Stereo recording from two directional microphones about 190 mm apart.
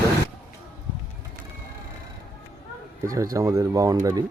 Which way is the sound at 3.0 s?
15° right (ahead or behind).